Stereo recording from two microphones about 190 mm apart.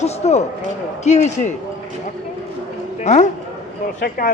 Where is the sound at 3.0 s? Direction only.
40° left (ahead or behind).